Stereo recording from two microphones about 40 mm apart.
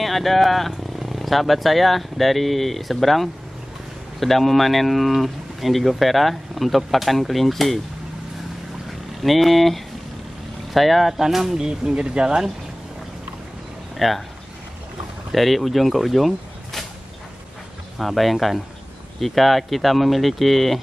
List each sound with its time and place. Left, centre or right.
0.0 s speech: centre
9.2 s speech: centre
11.9 s speech: right
13.9 s speech: centre
15.3 s speech: centre
17.9 s speech: centre